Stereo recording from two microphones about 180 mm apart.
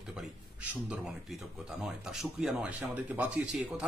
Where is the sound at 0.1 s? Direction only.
5° right (ahead or behind).